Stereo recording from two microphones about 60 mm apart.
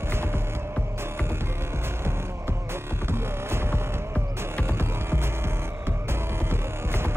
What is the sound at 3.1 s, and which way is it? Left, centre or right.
Music, right.